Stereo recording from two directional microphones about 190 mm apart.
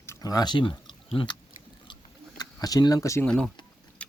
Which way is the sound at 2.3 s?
20° left (ahead or behind).